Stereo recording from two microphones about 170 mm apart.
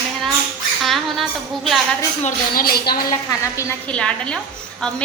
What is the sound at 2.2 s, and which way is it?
Speech, 60° left (ahead or behind).